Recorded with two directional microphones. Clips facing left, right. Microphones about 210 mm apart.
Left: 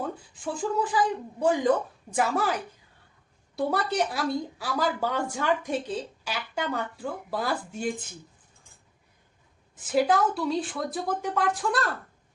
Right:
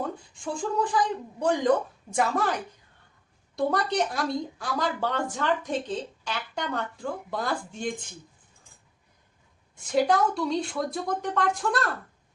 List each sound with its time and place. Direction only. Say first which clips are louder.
0.3 s speech: even; 5° left (ahead or behind)
9.7 s speech: even; 5° left (ahead or behind)